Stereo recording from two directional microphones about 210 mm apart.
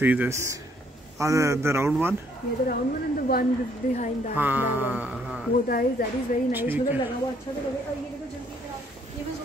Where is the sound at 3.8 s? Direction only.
40° left (ahead or behind).